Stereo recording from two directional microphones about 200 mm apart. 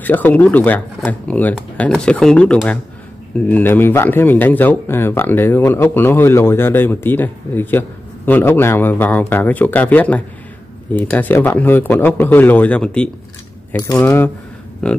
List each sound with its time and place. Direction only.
0.0 s speech: 10° left (ahead or behind)
13.7 s speech: 15° left (ahead or behind)